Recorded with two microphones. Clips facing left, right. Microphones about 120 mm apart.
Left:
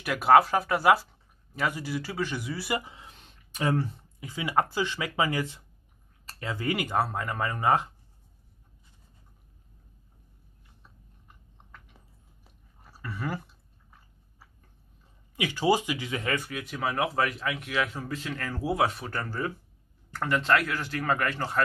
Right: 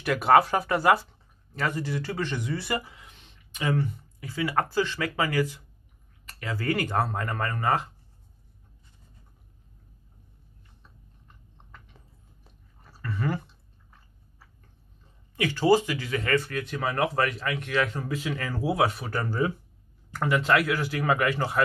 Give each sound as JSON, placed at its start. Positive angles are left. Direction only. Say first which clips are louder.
{"t": 0.0, "sound": "speech", "louder": "even", "side_deg": 0}
{"t": 2.8, "sound": "speech", "louder": "left 1 dB", "side_deg": 25}
{"t": 3.1, "sound": "a sound", "louder": "left 2 dB", "side_deg": 40}
{"t": 4.2, "sound": "speech", "louder": "even", "side_deg": 15}
{"t": 12.9, "sound": "a sound", "louder": "right 4 dB", "side_deg": 10}
{"t": 15.3, "sound": "speech", "louder": "right 4 dB", "side_deg": 15}